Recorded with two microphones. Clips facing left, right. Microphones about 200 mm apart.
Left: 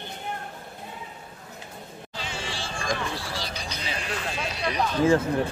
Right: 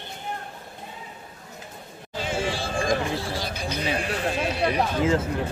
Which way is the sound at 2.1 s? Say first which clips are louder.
Right 9 dB; 50° right (ahead or behind).